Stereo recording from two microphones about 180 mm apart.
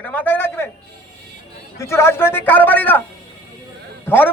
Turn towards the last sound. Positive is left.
turn(degrees=10)  # may be behind; listen again after turning